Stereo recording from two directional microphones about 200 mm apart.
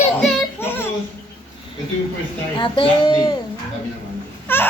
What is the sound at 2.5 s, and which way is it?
Speech, 25° left (ahead or behind).